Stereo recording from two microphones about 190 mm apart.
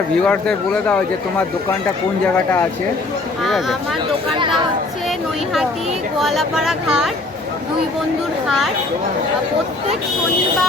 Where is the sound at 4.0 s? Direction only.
25° right (ahead or behind).